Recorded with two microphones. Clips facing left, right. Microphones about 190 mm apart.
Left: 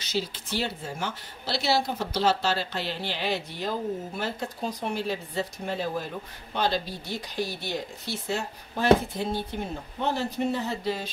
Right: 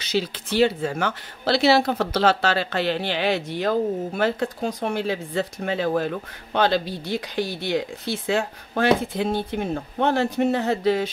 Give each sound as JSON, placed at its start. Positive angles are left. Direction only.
{"t": 0.0, "sound": "speech", "side_deg": -70}